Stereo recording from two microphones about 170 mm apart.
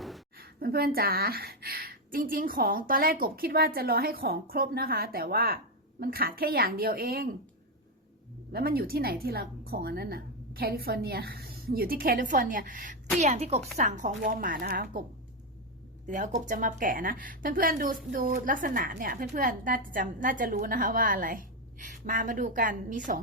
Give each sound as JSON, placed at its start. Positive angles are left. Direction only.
{"t": 0.3, "sound": "a woman's voice", "side_deg": -65}
{"t": 8.5, "sound": "a woman's voice", "side_deg": -60}
{"t": 13.1, "sound": "a woman's voice", "side_deg": -40}
{"t": 14.2, "sound": "a woman's voice", "side_deg": -60}
{"t": 16.0, "sound": "a woman's voice", "side_deg": -50}